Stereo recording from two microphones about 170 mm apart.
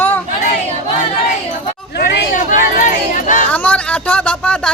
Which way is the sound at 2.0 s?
55° left (ahead or behind).